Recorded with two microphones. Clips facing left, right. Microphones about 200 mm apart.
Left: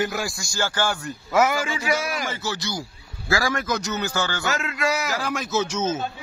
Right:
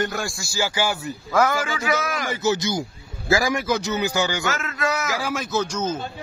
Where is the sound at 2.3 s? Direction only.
20° right (ahead or behind); by 6.0 s 5° left (ahead or behind).